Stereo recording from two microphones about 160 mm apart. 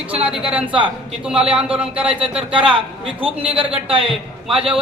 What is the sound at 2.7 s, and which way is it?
Speech, 35° right (ahead or behind).